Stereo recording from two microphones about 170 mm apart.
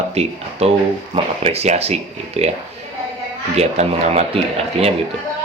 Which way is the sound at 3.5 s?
40° right (ahead or behind).